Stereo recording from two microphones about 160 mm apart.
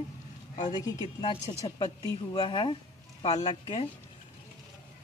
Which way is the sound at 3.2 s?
45° left (ahead or behind).